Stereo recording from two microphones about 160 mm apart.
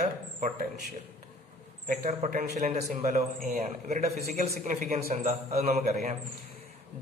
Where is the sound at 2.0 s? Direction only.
55° right (ahead or behind).